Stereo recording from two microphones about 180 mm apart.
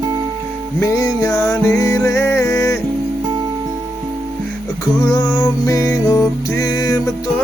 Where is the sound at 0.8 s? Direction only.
20° left (ahead or behind).